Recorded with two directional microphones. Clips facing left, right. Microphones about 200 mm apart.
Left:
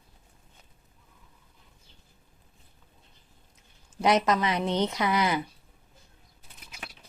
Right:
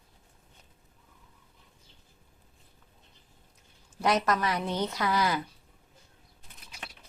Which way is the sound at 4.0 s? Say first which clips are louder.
Left 3 dB; 20° left (ahead or behind).